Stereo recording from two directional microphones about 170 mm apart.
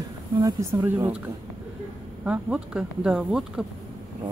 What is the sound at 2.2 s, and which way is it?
Speech, 5° right (ahead or behind).